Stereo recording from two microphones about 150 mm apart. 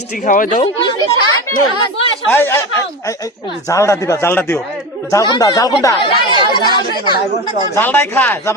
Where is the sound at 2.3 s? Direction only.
15° left (ahead or behind).